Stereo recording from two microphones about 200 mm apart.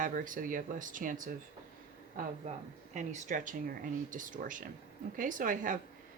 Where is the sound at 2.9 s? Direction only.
35° right (ahead or behind).